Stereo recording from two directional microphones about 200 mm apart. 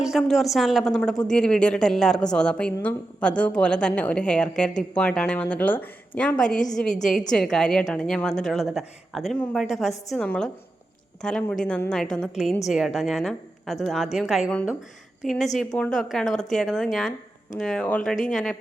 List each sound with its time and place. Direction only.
0.0 s a woman's voice: centre (ahead or behind)